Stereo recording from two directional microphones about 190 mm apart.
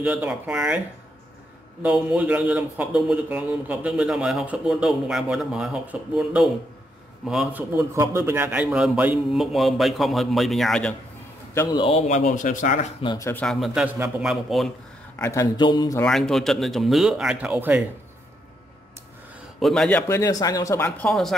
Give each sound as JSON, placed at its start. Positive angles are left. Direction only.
{"t": 0.0, "sound": "speech", "side_deg": -5}
{"t": 1.8, "sound": "speech", "side_deg": -5}
{"t": 11.5, "sound": "speech", "side_deg": 20}
{"t": 13.1, "sound": "speech", "side_deg": 15}
{"t": 15.1, "sound": "a man's voice", "side_deg": 15}
{"t": 16.0, "sound": "speech", "side_deg": 5}
{"t": 19.6, "sound": "speech", "side_deg": 0}
{"t": 20.0, "sound": "speech", "side_deg": 15}
{"t": 21.1, "sound": "speech", "side_deg": 0}